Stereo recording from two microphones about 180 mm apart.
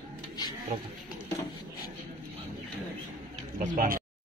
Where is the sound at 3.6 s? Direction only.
50° right (ahead or behind).